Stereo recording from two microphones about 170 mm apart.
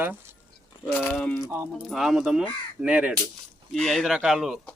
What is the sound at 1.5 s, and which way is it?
Speech, 15° right (ahead or behind).